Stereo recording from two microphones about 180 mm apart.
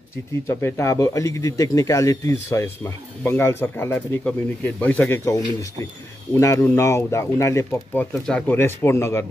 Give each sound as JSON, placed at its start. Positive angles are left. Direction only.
{"t": 0.5, "sound": "speech", "side_deg": 15}